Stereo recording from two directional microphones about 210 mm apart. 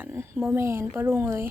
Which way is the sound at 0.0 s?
10° right (ahead or behind).